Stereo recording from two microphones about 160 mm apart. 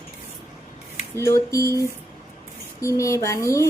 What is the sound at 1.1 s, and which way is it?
Speech, 20° left (ahead or behind).